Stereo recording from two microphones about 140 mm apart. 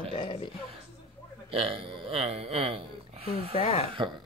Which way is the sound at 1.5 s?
45° right (ahead or behind).